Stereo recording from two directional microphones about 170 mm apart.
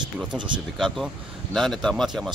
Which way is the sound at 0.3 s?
25° right (ahead or behind).